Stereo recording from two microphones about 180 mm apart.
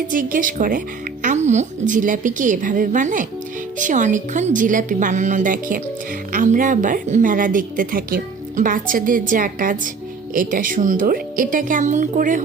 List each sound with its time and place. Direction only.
0.1 s a woman's voice: 50° right (ahead or behind)